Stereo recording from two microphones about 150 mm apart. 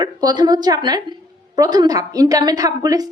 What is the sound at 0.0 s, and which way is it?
A woman's voice, 25° right (ahead or behind).